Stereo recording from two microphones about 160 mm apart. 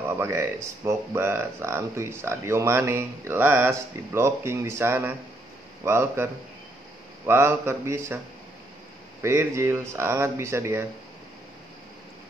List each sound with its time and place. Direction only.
0.2 s speech: 15° right (ahead or behind)
9.2 s speech: 15° right (ahead or behind)